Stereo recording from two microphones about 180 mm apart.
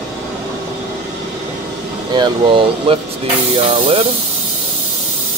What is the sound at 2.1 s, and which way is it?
Speech, 25° right (ahead or behind).